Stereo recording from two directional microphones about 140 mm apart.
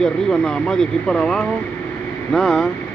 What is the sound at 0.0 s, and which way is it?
Speech, 5° left (ahead or behind).